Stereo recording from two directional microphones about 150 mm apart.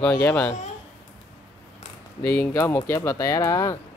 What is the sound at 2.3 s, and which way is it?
Speech, 10° left (ahead or behind).